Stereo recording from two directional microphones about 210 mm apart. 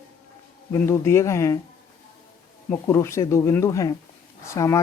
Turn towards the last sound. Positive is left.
turn(degrees=15)  # may be behind; listen again after turning